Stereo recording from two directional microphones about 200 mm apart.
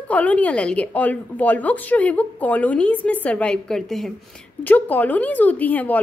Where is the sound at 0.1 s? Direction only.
5° left (ahead or behind).